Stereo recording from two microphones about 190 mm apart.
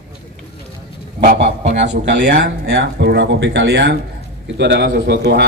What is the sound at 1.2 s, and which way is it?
A man's voice, 45° right (ahead or behind).